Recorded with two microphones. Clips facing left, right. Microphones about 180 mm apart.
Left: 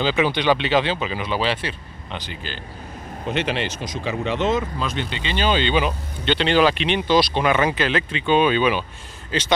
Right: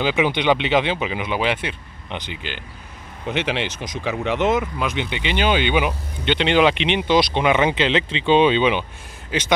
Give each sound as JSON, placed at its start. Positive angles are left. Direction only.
{"t": 0.0, "sound": "speech", "side_deg": -15}
{"t": 3.6, "sound": "speech", "side_deg": -15}